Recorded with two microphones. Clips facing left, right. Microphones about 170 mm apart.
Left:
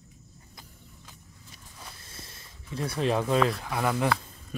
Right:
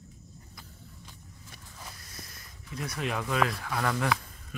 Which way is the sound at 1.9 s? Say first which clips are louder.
Even; 25° left (ahead or behind).